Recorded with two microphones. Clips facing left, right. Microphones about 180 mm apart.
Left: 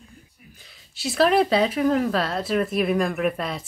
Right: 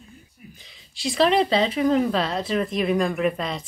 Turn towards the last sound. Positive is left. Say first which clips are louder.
# right 1 dB
turn(degrees=5)  # may be behind; listen again after turning